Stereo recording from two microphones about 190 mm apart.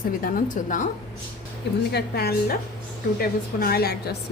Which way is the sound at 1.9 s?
55° left (ahead or behind).